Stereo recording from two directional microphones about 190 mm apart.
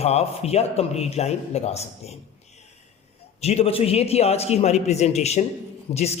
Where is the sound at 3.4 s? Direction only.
35° left (ahead or behind).